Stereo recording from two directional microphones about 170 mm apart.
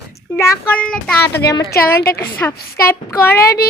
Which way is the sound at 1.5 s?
20° left (ahead or behind).